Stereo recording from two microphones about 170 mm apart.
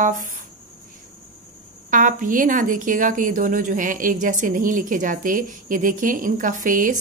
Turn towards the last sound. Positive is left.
turn(degrees=-50)  # may be behind; listen again after turning